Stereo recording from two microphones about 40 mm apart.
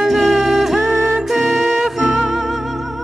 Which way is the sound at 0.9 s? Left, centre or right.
Right.